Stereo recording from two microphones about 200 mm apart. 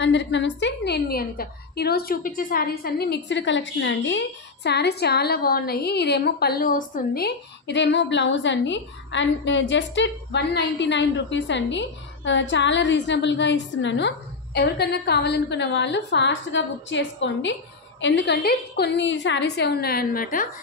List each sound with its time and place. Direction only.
0.0 s a woman's voice: 65° left (ahead or behind); by 20.4 s 45° left (ahead or behind)